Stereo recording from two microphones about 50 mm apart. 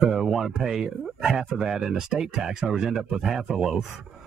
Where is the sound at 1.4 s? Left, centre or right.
Centre.